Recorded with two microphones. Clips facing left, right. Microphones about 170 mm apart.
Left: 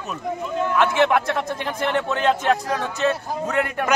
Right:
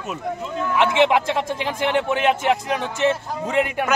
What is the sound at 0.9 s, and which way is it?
A man's voice, 20° right (ahead or behind).